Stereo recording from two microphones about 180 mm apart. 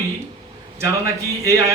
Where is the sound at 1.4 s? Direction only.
20° right (ahead or behind).